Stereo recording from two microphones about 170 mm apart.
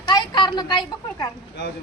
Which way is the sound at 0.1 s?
25° left (ahead or behind).